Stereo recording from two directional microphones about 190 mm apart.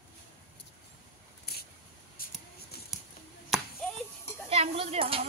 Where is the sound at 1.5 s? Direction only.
55° left (ahead or behind).